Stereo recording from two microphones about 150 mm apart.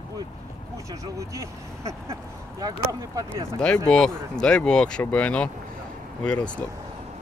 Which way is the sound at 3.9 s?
5° left (ahead or behind).